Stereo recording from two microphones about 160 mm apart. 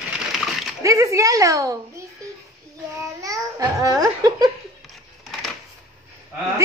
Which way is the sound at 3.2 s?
20° right (ahead or behind).